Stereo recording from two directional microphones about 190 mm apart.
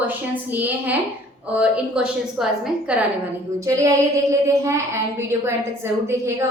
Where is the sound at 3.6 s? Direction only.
15° right (ahead or behind).